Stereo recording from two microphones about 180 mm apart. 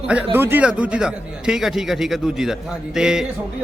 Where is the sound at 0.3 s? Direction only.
10° right (ahead or behind).